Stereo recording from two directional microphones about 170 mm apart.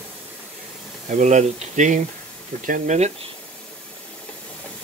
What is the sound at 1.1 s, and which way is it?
Speech, 45° right (ahead or behind).